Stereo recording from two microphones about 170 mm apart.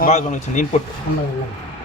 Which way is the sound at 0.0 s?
45° left (ahead or behind).